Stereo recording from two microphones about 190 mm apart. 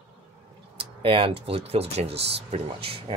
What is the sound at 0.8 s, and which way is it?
Speech, 30° right (ahead or behind).